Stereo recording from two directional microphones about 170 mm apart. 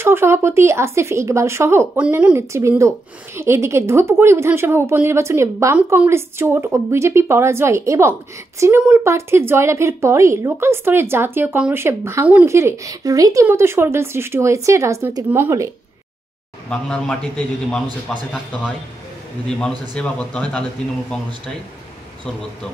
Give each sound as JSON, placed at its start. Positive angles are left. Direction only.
{"t": 0.0, "sound": "speech", "side_deg": -15}
{"t": 16.6, "sound": "a man's voice", "side_deg": 5}
{"t": 20.0, "sound": "speech", "side_deg": 5}